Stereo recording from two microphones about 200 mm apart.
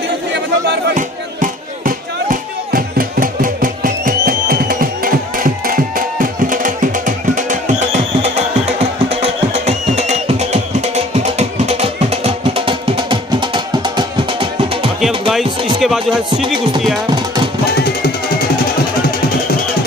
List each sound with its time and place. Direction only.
0.9 s music: 40° right (ahead or behind); by 14.9 s 25° right (ahead or behind)
15.0 s music: centre (ahead or behind)